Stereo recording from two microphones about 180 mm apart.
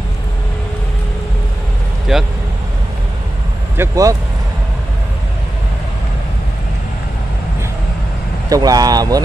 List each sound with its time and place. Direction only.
2.1 s speech: 5° right (ahead or behind)
3.7 s speech: 15° right (ahead or behind)
8.5 s speech: 20° right (ahead or behind)